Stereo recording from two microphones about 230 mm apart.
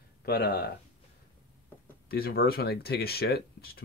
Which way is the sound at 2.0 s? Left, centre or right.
Left.